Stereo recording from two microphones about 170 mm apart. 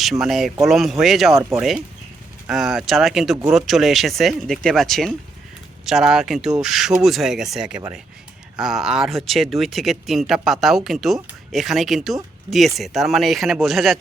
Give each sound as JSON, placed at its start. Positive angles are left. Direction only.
{"t": 0.0, "sound": "speech", "side_deg": 0}
{"t": 1.4, "sound": "speech", "side_deg": -15}
{"t": 2.5, "sound": "speech", "side_deg": 0}